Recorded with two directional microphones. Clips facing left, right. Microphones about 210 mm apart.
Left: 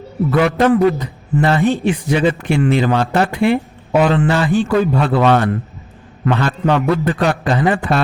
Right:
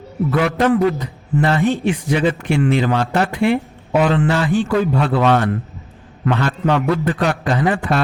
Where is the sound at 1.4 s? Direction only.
35° left (ahead or behind).